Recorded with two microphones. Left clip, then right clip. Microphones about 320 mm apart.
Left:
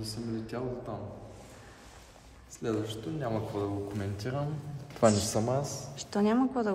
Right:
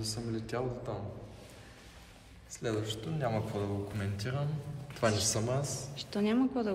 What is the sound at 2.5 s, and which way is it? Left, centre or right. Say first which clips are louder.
A man's voice: left 2 dB; centre.